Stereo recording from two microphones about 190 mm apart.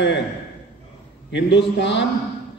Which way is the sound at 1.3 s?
70° left (ahead or behind).